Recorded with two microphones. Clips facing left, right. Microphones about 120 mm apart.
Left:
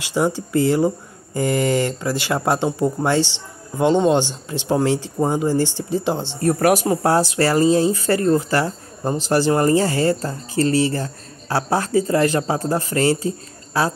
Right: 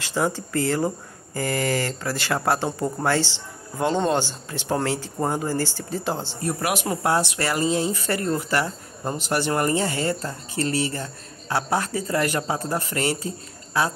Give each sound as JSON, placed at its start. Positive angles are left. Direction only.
{"t": 0.0, "sound": "speech", "side_deg": 15}
{"t": 6.4, "sound": "speech", "side_deg": 40}